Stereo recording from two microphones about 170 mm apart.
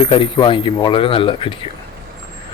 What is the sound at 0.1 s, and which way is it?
Speech, 30° left (ahead or behind).